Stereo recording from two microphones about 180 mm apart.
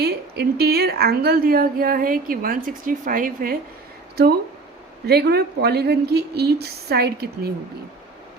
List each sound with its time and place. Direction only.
0.0 s a woman's voice: 60° right (ahead or behind)
5.0 s a woman's voice: 60° right (ahead or behind)